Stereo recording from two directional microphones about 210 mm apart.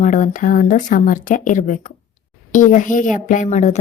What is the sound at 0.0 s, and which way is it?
A woman's voice, 40° left (ahead or behind).